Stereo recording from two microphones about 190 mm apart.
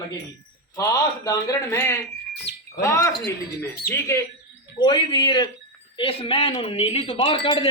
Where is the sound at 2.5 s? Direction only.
60° left (ahead or behind).